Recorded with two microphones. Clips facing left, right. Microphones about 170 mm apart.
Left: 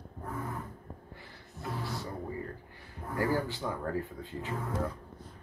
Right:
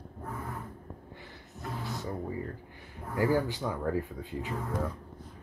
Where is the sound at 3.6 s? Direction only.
5° right (ahead or behind).